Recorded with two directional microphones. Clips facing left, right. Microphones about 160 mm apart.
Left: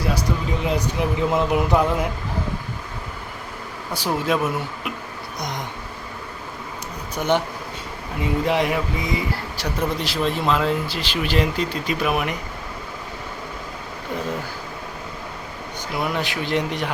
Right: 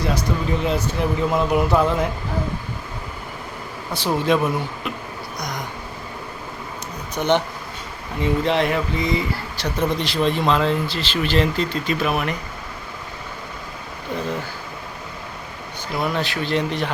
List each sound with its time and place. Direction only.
0.0 s speech: 10° left (ahead or behind)
3.9 s speech: 10° left (ahead or behind)
5.4 s a sound: 25° left (ahead or behind)
7.2 s speech: 10° left (ahead or behind)
16.0 s speech: 15° left (ahead or behind)